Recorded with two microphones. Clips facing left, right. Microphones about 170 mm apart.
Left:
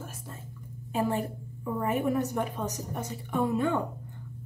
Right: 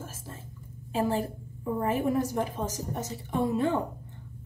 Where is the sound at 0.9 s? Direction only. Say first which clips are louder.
Right 1 dB; 30° right (ahead or behind).